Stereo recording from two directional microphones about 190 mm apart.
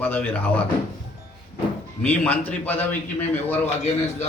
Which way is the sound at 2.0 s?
10° left (ahead or behind).